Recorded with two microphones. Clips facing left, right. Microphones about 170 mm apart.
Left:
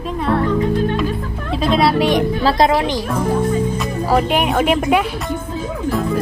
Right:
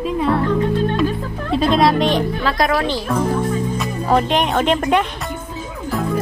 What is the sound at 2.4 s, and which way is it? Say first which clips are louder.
Speech: left 4 dB; 25° left (ahead or behind).